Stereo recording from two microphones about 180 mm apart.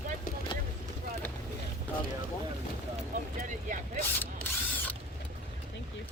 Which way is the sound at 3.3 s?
45° right (ahead or behind).